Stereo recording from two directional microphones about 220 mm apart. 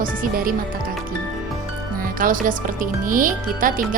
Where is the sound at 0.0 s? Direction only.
40° right (ahead or behind).